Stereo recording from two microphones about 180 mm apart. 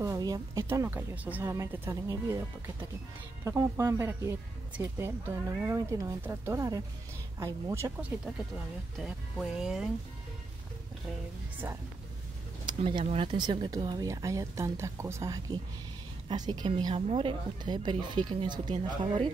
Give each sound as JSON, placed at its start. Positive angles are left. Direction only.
{"t": 0.0, "sound": "speech", "side_deg": -20}
{"t": 9.0, "sound": "speech", "side_deg": -5}
{"t": 11.6, "sound": "speech", "side_deg": -10}
{"t": 12.6, "sound": "speech", "side_deg": -25}